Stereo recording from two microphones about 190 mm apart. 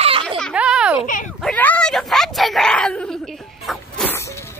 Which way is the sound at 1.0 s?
45° left (ahead or behind).